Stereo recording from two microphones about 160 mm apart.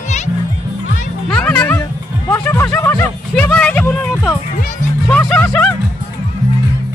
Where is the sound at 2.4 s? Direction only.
10° left (ahead or behind).